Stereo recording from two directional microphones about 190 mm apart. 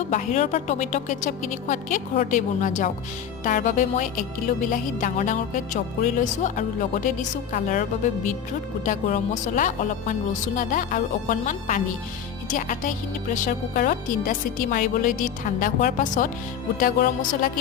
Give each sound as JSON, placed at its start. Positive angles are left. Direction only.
{"t": 0.1, "sound": "a woman's voice", "side_deg": 40}